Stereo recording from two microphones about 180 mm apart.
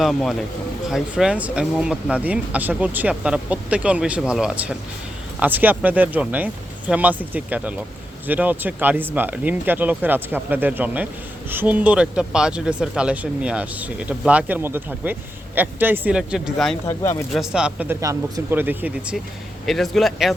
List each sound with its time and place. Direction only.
0.0 s a man's voice: centre (ahead or behind)
16.8 s speech: 15° left (ahead or behind)
17.3 s a man's voice: 5° right (ahead or behind)